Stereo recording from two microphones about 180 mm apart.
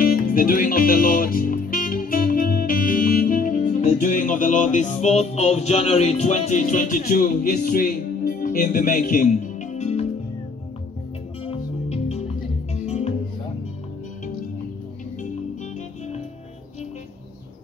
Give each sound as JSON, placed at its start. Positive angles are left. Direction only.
{"t": 0.0, "sound": "music", "side_deg": 50}
{"t": 11.4, "sound": "music", "side_deg": 35}